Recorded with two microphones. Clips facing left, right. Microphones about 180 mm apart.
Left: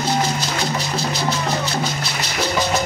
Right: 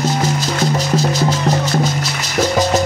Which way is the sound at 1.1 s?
45° right (ahead or behind).